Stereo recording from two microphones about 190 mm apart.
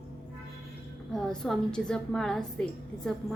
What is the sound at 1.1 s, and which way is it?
A woman's voice, centre (ahead or behind).